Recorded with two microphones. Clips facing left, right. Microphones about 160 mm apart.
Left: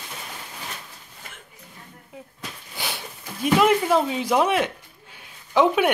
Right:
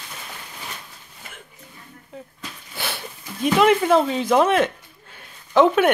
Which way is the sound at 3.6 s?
5° left (ahead or behind).